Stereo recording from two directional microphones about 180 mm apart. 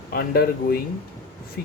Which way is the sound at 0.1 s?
60° left (ahead or behind).